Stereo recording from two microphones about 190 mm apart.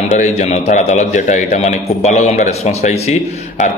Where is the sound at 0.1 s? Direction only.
35° left (ahead or behind).